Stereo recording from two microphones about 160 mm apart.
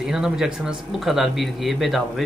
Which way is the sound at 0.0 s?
5° right (ahead or behind).